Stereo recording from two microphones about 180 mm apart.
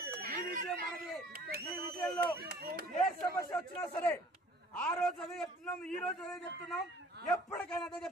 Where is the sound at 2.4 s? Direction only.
55° right (ahead or behind).